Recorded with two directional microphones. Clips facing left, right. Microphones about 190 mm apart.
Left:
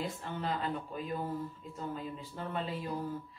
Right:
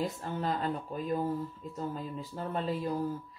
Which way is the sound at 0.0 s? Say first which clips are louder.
Right 4 dB; 40° right (ahead or behind).